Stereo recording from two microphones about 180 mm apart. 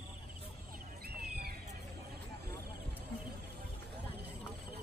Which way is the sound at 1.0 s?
60° right (ahead or behind).